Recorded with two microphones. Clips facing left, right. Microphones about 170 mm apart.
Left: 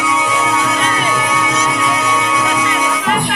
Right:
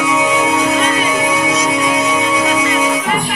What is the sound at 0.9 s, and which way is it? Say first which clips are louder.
Music: right 2 dB; 30° right (ahead or behind).